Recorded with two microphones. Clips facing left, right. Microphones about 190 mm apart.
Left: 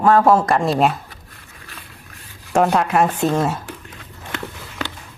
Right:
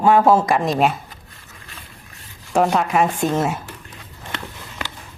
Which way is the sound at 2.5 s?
Centre (ahead or behind).